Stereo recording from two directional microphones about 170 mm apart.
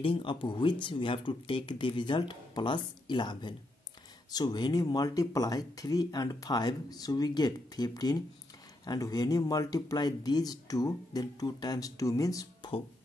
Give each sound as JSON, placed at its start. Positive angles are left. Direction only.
{"t": 0.0, "sound": "speech", "side_deg": 30}